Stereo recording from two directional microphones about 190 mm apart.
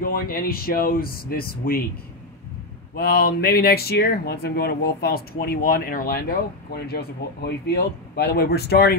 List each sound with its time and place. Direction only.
0.0 s speech: 50° left (ahead or behind)
3.0 s speech: 55° left (ahead or behind)